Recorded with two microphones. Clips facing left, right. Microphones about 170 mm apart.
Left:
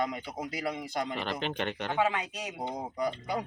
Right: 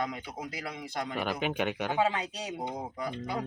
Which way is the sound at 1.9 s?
30° right (ahead or behind).